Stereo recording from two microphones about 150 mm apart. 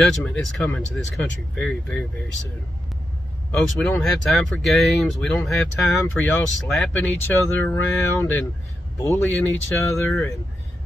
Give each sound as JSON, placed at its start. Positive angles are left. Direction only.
{"t": 0.0, "sound": "speech", "side_deg": 5}
{"t": 3.5, "sound": "speech", "side_deg": 5}